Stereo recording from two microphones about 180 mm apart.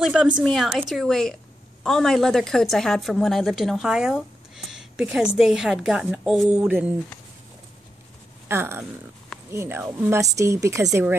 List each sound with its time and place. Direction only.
0.0 s a woman's voice: 5° right (ahead or behind)
8.5 s speech: 15° right (ahead or behind)